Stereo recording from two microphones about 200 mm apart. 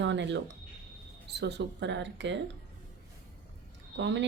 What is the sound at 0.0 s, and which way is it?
Speech, 65° right (ahead or behind).